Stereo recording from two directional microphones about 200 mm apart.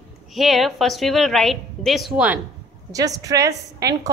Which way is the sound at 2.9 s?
15° right (ahead or behind).